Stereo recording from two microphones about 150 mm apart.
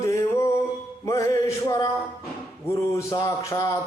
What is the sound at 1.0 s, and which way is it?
Music, 20° left (ahead or behind).